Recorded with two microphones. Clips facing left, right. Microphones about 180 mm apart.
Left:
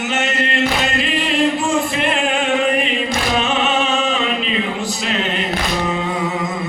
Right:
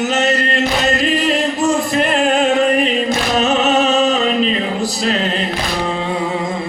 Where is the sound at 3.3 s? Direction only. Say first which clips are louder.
Right 5 dB; 40° right (ahead or behind).